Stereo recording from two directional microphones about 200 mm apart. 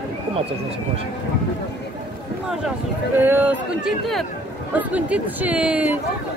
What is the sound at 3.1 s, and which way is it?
Speech, 10° right (ahead or behind).